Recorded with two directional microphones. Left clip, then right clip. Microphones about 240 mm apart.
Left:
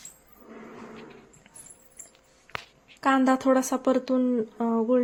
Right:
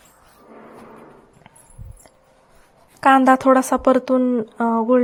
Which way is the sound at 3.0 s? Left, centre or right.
Right.